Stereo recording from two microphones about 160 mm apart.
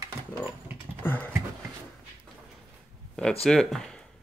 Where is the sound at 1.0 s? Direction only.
10° left (ahead or behind).